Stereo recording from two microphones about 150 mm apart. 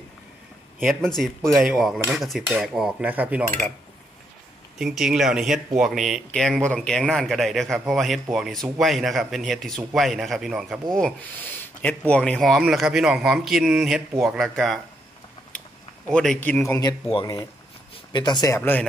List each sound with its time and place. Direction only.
0.7 s speech: centre (ahead or behind)
4.7 s speech: centre (ahead or behind)
16.1 s speech: 5° left (ahead or behind)
17.1 s speech: 30° left (ahead or behind)
18.6 s speech: 10° left (ahead or behind)